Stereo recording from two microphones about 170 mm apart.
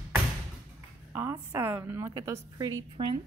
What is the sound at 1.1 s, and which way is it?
A woman's voice, 15° right (ahead or behind).